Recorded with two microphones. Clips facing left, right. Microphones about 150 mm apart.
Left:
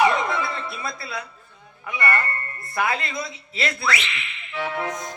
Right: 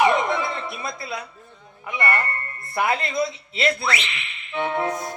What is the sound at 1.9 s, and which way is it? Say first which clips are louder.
A man's voice: even; 25° right (ahead or behind).